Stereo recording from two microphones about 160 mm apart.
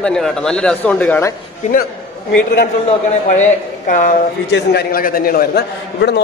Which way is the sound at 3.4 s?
55° left (ahead or behind).